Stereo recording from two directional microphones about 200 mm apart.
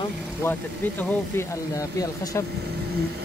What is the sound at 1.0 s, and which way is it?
Speech, 10° left (ahead or behind).